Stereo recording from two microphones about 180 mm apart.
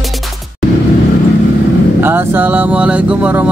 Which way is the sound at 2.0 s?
10° right (ahead or behind).